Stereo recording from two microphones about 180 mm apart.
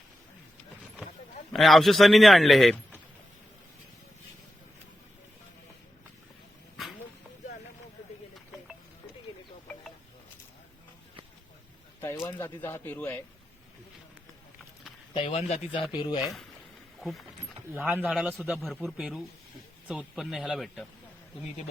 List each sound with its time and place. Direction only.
1.5 s a man's voice: centre (ahead or behind)
12.2 s a sound: 15° left (ahead or behind)
15.1 s speech: 30° left (ahead or behind)
15.9 s speech: 25° left (ahead or behind)
17.0 s speech: centre (ahead or behind)
17.7 s a man's voice: 10° right (ahead or behind)